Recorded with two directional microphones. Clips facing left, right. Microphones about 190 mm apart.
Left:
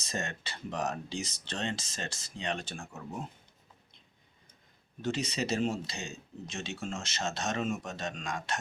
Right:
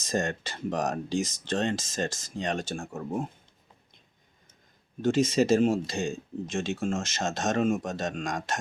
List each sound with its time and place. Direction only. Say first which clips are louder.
0.0 s speech: right 8 dB; 50° right (ahead or behind)
5.0 s speech: right 10 dB; 45° right (ahead or behind)